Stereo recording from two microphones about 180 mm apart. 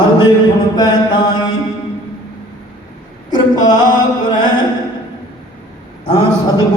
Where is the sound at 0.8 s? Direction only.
25° left (ahead or behind).